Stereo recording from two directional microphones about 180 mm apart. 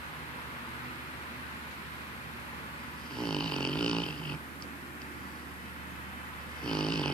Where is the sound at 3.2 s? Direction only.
5° left (ahead or behind).